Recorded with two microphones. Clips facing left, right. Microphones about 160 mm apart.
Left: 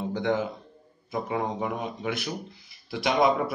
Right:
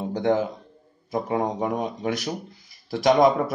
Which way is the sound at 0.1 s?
40° right (ahead or behind).